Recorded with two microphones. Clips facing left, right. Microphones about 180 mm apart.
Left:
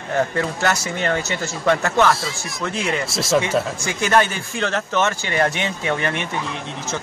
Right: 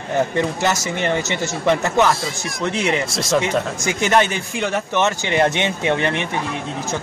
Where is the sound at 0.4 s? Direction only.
20° right (ahead or behind).